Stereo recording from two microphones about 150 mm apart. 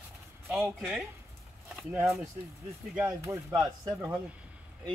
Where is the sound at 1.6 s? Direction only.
5° right (ahead or behind).